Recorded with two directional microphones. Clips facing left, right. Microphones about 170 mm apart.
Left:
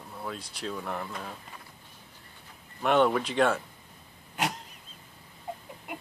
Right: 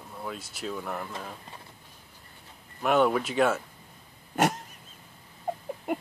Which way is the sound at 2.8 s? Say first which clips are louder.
Even; 5° right (ahead or behind).